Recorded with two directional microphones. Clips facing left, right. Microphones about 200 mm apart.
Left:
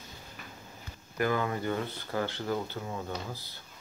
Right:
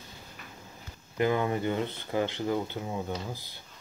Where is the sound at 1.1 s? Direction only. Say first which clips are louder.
Right 3 dB; 20° right (ahead or behind).